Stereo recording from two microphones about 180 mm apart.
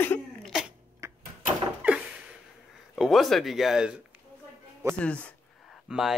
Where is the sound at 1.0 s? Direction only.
15° right (ahead or behind).